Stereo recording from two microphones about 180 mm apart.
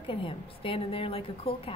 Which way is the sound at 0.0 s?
30° left (ahead or behind).